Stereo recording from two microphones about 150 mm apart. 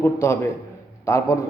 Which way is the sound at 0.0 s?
15° left (ahead or behind).